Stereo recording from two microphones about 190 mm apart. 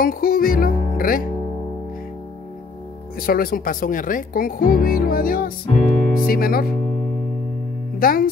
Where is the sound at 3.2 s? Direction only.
50° left (ahead or behind).